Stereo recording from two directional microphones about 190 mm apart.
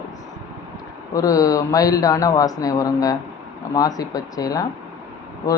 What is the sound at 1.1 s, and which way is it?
Speech, 20° left (ahead or behind).